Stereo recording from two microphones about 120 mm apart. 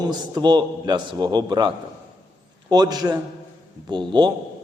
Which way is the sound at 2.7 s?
35° right (ahead or behind).